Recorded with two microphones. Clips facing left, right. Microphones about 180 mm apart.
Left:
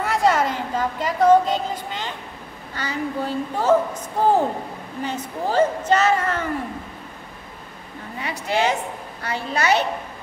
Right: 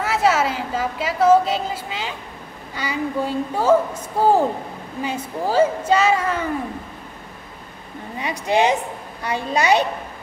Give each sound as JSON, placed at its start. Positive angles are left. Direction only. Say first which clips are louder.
{"t": 0.0, "sound": "a woman's voice", "louder": "right 1 dB", "side_deg": -5}
{"t": 8.2, "sound": "a woman's voice", "louder": "right 4 dB", "side_deg": -20}